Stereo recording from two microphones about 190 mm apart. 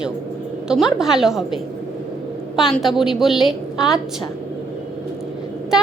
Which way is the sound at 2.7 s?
Centre (ahead or behind).